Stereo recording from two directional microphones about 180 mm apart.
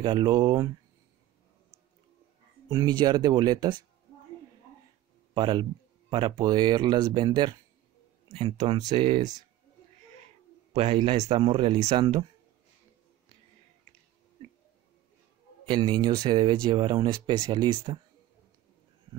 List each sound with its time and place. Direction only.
0.0 s speech: 25° right (ahead or behind)
2.7 s speech: 25° right (ahead or behind)
5.3 s speech: 25° right (ahead or behind)
10.7 s speech: 30° right (ahead or behind)
15.6 s speech: 25° right (ahead or behind)